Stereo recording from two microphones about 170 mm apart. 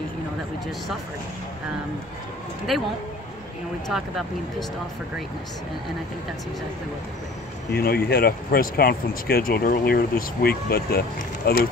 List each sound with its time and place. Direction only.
2.7 s speech: centre (ahead or behind)
7.7 s speech: 65° left (ahead or behind)